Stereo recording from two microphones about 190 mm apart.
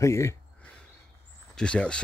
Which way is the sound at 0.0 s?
15° left (ahead or behind).